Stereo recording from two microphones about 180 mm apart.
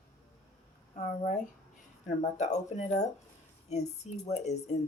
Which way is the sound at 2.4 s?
40° left (ahead or behind).